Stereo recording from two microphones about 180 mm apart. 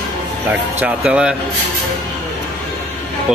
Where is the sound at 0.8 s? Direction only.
5° right (ahead or behind).